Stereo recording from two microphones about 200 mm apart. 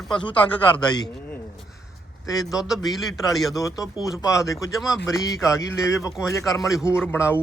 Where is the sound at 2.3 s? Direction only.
20° left (ahead or behind).